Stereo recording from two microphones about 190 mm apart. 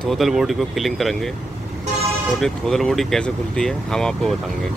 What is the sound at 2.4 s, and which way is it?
Speech, centre (ahead or behind).